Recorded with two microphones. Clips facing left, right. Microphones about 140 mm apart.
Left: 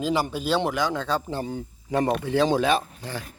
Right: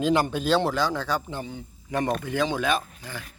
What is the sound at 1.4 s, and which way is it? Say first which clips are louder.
Speech: left 5 dB; 40° left (ahead or behind).